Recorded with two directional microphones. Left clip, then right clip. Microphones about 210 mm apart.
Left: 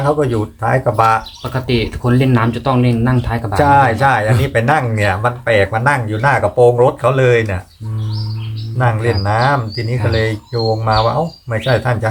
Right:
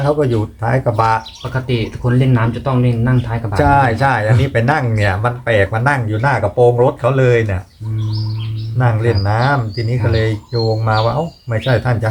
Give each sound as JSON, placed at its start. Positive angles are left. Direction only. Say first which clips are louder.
{"t": 0.2, "sound": "speech", "louder": "even", "side_deg": 0}
{"t": 1.5, "sound": "speech", "louder": "left 3 dB", "side_deg": 55}
{"t": 3.5, "sound": "speech", "louder": "left 2 dB", "side_deg": 0}
{"t": 8.8, "sound": "speech", "louder": "left 1 dB", "side_deg": 0}